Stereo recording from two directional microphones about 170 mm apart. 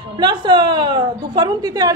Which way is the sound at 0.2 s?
25° right (ahead or behind).